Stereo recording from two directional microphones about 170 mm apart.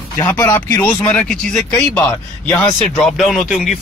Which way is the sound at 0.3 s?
15° left (ahead or behind).